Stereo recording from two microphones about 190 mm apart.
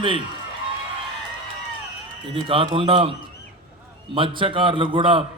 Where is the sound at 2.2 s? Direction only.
30° right (ahead or behind).